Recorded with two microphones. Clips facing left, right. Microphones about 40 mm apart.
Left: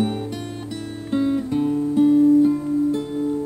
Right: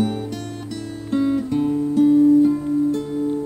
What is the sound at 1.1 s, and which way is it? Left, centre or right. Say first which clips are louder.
Guitar: right 1 dB; centre.